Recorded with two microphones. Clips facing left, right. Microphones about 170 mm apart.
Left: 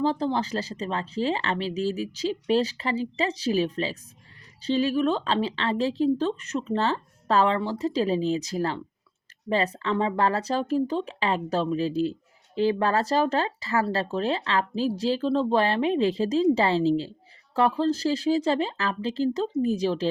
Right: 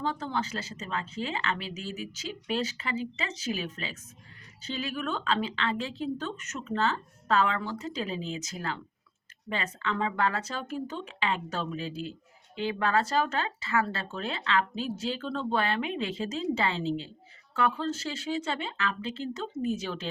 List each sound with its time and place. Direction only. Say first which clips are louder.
0.0 s speech: left 7 dB; 35° left (ahead or behind)